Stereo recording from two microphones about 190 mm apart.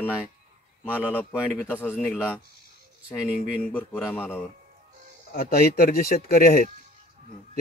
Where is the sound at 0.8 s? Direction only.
10° left (ahead or behind).